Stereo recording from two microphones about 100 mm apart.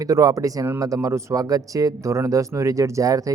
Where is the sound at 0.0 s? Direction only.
35° right (ahead or behind).